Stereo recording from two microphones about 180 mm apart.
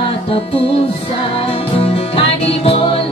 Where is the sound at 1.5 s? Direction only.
35° left (ahead or behind).